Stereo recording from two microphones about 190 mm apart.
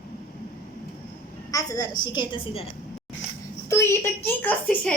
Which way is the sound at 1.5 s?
20° left (ahead or behind).